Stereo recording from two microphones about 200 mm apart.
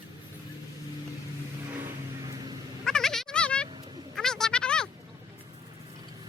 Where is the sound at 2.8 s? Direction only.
5° left (ahead or behind).